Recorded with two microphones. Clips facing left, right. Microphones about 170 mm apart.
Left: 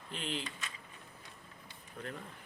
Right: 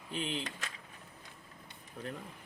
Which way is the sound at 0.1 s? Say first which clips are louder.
Right 3 dB; centre (ahead or behind).